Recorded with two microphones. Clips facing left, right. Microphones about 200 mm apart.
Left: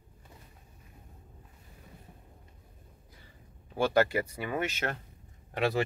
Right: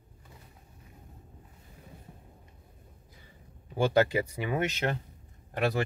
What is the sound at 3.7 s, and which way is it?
Speech, 15° right (ahead or behind).